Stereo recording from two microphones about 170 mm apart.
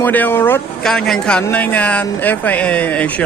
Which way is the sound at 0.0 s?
10° left (ahead or behind).